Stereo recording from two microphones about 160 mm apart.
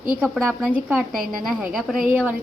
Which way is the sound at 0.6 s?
10° right (ahead or behind).